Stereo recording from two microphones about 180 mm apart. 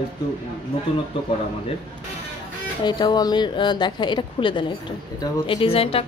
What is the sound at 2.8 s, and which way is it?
A woman's voice, 25° left (ahead or behind).